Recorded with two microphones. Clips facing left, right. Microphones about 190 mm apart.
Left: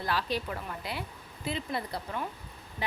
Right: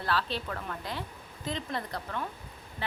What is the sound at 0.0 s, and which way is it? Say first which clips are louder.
Speech: even; 10° left (ahead or behind).